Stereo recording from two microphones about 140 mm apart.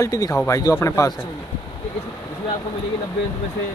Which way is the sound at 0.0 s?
20° left (ahead or behind).